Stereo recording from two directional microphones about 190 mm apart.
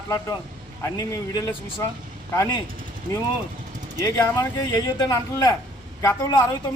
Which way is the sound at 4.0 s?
20° left (ahead or behind).